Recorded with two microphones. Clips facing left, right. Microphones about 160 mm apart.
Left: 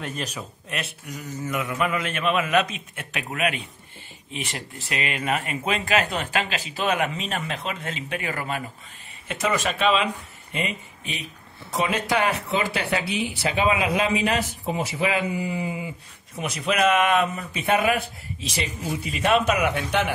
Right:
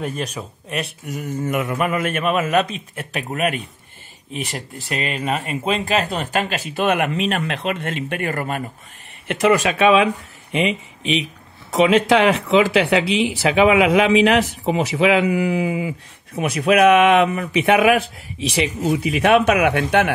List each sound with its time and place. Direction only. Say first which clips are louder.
1.0 s a man's voice: right 7 dB; 50° right (ahead or behind); by 6.2 s 35° right (ahead or behind)
6.3 s speech: right 5 dB; 45° right (ahead or behind)
9.3 s speech: right 8 dB; 70° right (ahead or behind)
10.5 s speech: right 9 dB; 85° right
16.3 s speech: right 8 dB; 65° right (ahead or behind)